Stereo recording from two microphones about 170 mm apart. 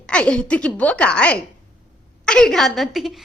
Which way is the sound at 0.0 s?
5° left (ahead or behind).